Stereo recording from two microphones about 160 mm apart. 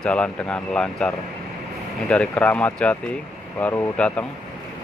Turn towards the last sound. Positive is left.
turn(degrees=10)  # may be behind; listen again after turning